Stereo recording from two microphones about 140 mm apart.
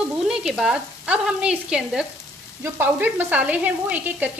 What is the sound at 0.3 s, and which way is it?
Frying, 5° right (ahead or behind).